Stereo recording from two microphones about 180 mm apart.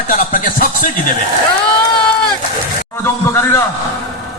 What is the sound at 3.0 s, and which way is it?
Speech, 15° left (ahead or behind).